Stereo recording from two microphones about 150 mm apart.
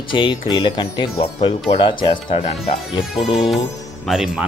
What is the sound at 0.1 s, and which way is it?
Speech, 35° left (ahead or behind).